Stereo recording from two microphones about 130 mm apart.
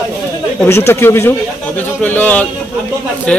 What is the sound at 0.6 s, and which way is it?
Speech, 20° left (ahead or behind).